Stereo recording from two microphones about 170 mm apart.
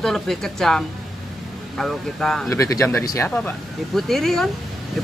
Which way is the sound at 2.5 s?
20° left (ahead or behind).